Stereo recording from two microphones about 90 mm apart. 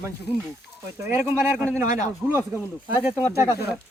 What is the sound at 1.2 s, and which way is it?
Speech, 25° right (ahead or behind).